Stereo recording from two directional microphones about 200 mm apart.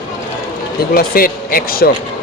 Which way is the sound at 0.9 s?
45° left (ahead or behind).